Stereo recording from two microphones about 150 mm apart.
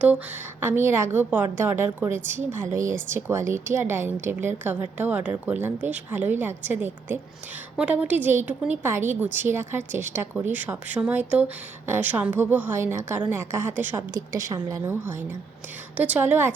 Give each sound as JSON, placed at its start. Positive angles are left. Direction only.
{"t": 0.6, "sound": "a woman's voice", "side_deg": -15}
{"t": 14.1, "sound": "a woman's voice", "side_deg": -25}